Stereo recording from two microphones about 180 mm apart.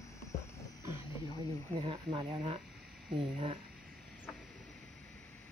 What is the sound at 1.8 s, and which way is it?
Speech, 25° right (ahead or behind).